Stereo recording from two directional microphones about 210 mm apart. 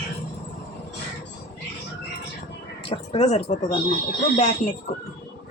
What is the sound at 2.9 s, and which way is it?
Speech, 30° left (ahead or behind).